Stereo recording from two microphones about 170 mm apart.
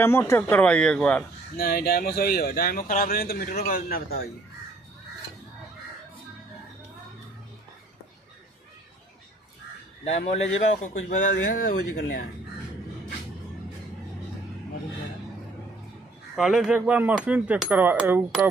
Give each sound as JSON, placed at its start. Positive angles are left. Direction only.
{"t": 0.0, "sound": "a man's voice", "side_deg": 15}
{"t": 1.6, "sound": "speech", "side_deg": 65}
{"t": 10.1, "sound": "a man's voice", "side_deg": 40}
{"t": 11.3, "sound": "speech", "side_deg": 75}
{"t": 16.3, "sound": "speech", "side_deg": -5}